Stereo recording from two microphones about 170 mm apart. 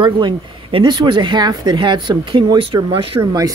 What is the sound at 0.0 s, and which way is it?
Speech, 30° right (ahead or behind).